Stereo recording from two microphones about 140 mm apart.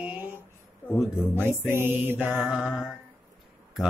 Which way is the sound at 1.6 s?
15° right (ahead or behind).